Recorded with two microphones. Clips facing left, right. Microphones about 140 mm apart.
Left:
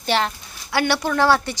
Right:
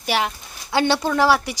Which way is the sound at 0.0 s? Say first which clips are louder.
Left 1 dB; 10° right (ahead or behind).